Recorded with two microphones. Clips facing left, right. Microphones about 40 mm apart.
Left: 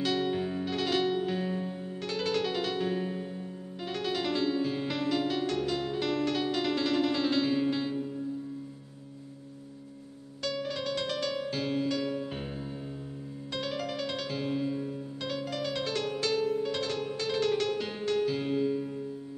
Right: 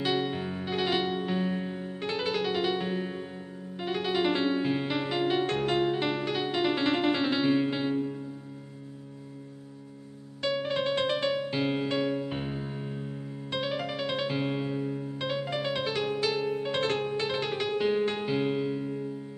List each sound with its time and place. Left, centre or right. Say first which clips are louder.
0.0 s music: even; centre
10.4 s music: right 5 dB; right
16.5 s music: right 2 dB; right